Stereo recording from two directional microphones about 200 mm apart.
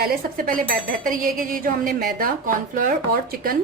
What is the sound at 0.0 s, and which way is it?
Speech, 45° right (ahead or behind).